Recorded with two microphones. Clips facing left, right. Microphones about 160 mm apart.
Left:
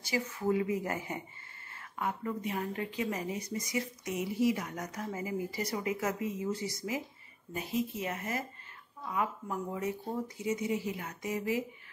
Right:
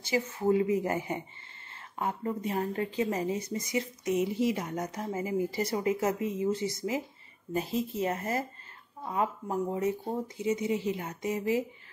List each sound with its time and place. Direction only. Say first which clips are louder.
0.0 s a woman's voice: right 4 dB; 25° right (ahead or behind)